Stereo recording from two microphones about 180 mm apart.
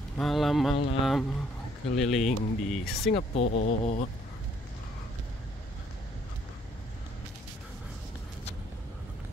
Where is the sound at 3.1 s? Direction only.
40° left (ahead or behind).